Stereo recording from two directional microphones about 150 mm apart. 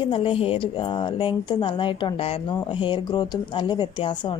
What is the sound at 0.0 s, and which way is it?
Speech, 35° left (ahead or behind).